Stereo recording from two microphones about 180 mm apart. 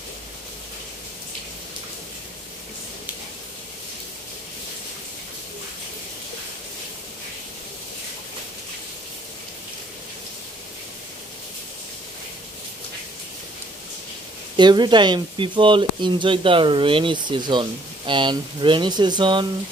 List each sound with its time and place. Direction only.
14.6 s speech: 25° right (ahead or behind)